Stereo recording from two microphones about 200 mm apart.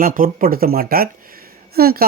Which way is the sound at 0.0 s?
45° right (ahead or behind).